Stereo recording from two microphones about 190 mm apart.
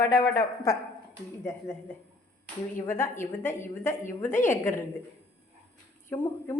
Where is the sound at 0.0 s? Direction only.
20° left (ahead or behind).